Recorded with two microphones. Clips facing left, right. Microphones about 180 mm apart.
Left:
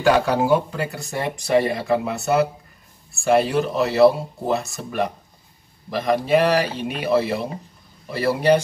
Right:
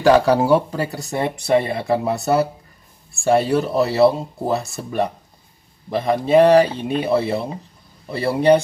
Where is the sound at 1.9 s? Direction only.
35° right (ahead or behind).